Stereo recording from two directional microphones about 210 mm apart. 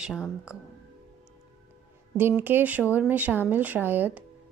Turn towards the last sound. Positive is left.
turn(degrees=-10)  # may be behind; listen again after turning